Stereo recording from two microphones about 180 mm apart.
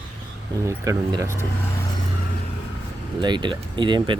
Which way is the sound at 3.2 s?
25° right (ahead or behind).